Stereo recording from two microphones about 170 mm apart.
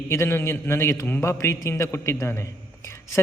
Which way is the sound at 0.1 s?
15° left (ahead or behind).